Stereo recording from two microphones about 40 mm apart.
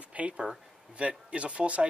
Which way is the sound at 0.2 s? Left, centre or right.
Right.